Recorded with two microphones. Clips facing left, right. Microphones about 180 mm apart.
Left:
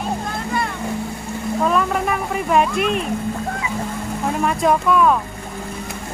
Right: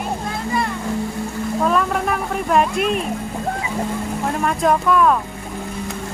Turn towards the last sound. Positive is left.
turn(degrees=0)  # may be behind; listen again after turning